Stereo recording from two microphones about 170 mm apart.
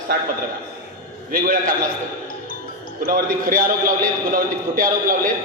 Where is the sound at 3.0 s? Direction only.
60° right (ahead or behind).